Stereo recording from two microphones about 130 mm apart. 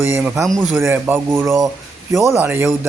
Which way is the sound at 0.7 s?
20° right (ahead or behind).